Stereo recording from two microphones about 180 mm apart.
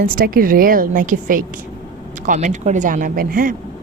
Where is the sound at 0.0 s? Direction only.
50° right (ahead or behind).